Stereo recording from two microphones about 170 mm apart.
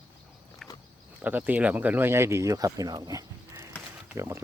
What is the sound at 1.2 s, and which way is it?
Speech, 10° right (ahead or behind).